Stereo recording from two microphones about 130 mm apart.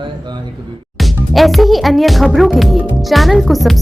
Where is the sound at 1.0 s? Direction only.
Centre (ahead or behind).